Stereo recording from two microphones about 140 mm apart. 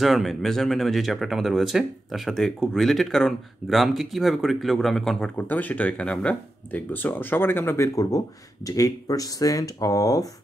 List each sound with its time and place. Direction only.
0.0 s speech: centre (ahead or behind); by 10.2 s 25° left (ahead or behind)